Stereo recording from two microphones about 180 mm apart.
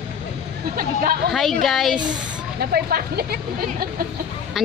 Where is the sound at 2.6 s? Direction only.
60° right (ahead or behind).